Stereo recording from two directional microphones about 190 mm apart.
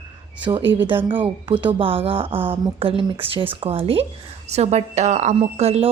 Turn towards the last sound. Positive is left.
turn(degrees=-35)  # may be behind; listen again after turning